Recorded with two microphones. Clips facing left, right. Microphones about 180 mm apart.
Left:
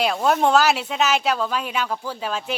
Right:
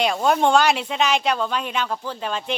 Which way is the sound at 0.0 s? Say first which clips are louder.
Even; centre (ahead or behind).